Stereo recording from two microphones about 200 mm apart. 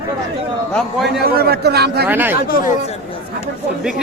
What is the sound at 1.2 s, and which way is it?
Speech, 50° right (ahead or behind).